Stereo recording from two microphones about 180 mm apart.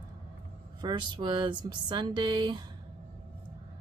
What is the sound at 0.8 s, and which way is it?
Speech, 25° right (ahead or behind).